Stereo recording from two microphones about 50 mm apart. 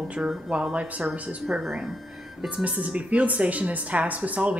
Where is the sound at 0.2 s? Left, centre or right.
Centre.